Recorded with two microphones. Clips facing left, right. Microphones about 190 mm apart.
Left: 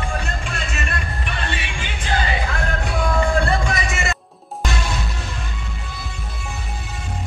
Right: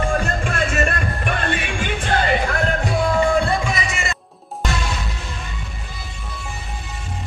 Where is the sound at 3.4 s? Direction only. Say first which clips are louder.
Even; 5° right (ahead or behind).